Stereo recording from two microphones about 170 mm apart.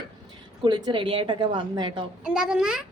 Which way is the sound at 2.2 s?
5° right (ahead or behind).